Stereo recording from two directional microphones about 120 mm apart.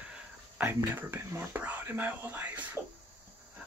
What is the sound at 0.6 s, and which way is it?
Speech, 20° right (ahead or behind).